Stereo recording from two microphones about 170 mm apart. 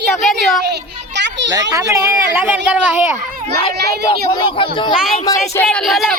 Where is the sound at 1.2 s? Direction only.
90° right.